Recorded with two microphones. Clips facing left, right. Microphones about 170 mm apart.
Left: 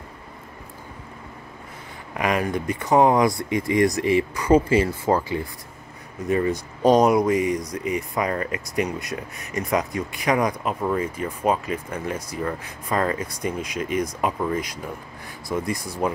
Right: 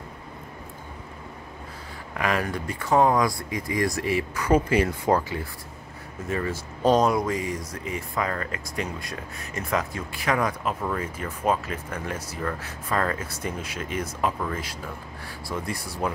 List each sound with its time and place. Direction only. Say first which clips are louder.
2.1 s speech: left 3 dB; 15° left (ahead or behind)
6.2 s speech: left 7 dB; 15° left (ahead or behind)